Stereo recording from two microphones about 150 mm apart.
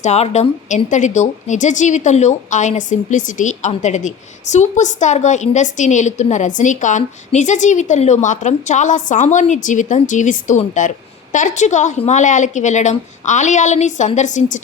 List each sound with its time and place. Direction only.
0.0 s a woman's voice: 45° left (ahead or behind)